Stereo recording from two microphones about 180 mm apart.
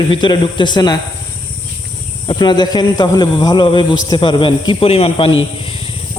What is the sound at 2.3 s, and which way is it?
A man's voice, 25° left (ahead or behind).